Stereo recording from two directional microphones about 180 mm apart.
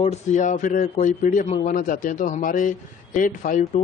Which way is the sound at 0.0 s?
40° left (ahead or behind).